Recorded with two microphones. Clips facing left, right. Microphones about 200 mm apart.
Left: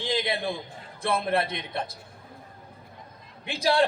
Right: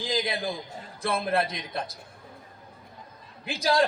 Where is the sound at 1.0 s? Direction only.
30° left (ahead or behind).